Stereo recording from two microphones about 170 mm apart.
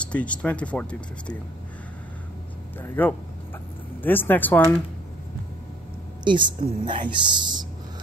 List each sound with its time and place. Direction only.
0.0 s speech: 5° left (ahead or behind)
2.8 s speech: 10° left (ahead or behind)
6.2 s a woman's voice: 30° right (ahead or behind)